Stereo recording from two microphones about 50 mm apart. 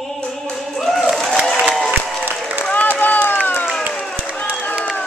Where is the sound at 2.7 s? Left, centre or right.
Left.